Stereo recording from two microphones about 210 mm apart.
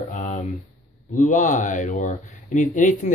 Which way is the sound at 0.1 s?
35° left (ahead or behind).